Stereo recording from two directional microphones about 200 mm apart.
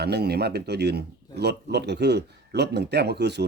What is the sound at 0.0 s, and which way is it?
A man's voice, 55° right (ahead or behind).